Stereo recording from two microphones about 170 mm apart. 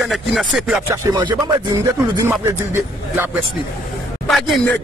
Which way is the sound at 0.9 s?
20° right (ahead or behind).